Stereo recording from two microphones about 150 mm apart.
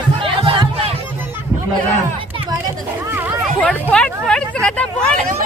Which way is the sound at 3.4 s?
5° left (ahead or behind).